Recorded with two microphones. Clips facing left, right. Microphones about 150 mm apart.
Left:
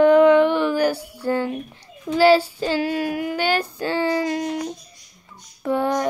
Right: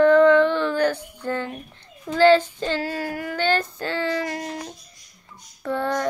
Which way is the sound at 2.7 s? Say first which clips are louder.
Left 5 dB; 20° left (ahead or behind).